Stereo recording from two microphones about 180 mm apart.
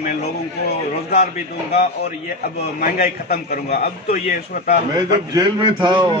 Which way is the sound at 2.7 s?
50° left (ahead or behind).